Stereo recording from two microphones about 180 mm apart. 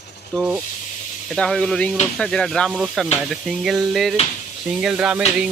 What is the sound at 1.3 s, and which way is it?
Speech, 5° left (ahead or behind).